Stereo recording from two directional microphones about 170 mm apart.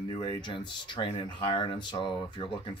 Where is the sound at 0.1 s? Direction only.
25° left (ahead or behind).